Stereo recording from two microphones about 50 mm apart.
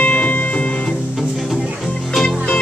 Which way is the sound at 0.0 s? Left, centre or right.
Left.